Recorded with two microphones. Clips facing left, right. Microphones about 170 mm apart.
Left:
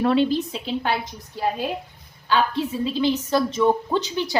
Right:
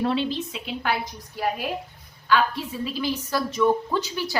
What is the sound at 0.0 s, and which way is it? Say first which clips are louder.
A woman's voice: left 5 dB; 50° left (ahead or behind).